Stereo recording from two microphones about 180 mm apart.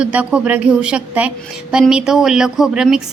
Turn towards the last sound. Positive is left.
turn(degrees=-5)  # may be behind; listen again after turning